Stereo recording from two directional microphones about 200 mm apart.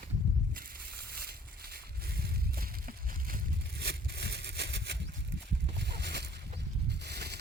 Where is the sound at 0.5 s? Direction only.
50° right (ahead or behind).